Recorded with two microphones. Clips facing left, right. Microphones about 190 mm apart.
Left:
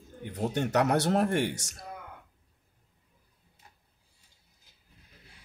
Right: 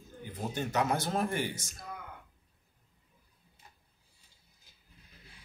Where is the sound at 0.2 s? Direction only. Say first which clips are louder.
Left 6 dB; 70° left (ahead or behind).